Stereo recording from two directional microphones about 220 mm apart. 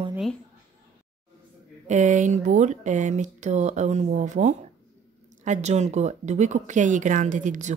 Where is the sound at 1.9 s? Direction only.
35° right (ahead or behind).